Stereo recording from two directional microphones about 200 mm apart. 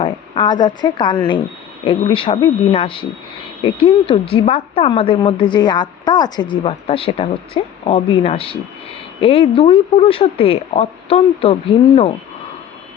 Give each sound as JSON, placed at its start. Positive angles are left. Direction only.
{"t": 0.0, "sound": "a woman's voice", "side_deg": 25}